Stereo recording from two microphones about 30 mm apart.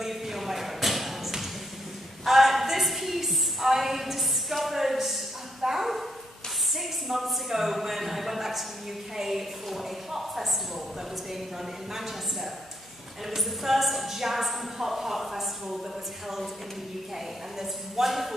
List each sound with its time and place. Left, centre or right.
0.0 s a sound: centre
5.6 s bow-wow: centre
6.8 s a sound: centre
9.1 s a woman's voice: centre
11.9 s a woman's voice: centre
17.6 s a woman's voice: centre